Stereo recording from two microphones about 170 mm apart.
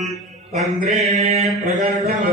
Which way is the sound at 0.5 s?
50° right (ahead or behind).